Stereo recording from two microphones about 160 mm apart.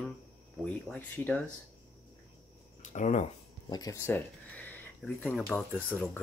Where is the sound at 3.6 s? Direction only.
25° left (ahead or behind).